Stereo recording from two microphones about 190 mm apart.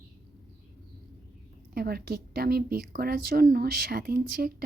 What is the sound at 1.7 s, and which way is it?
A woman's voice, 55° right (ahead or behind).